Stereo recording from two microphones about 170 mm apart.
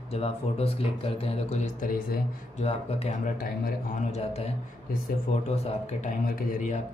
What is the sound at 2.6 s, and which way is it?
Speech, 35° left (ahead or behind).